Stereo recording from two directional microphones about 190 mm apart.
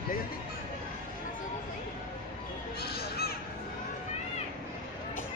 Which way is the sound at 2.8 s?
55° left (ahead or behind).